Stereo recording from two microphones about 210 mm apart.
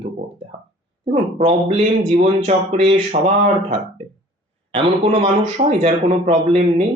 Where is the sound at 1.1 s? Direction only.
30° right (ahead or behind).